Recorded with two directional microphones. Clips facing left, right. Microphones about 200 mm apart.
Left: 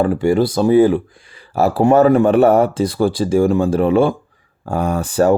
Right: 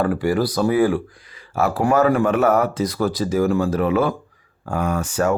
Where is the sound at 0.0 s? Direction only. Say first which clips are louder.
Left 5 dB; 25° left (ahead or behind).